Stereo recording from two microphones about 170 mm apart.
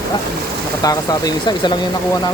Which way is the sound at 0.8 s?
20° left (ahead or behind).